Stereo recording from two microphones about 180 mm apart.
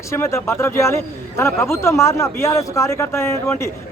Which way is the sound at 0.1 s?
15° left (ahead or behind).